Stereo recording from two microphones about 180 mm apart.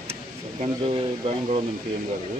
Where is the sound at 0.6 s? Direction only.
35° right (ahead or behind).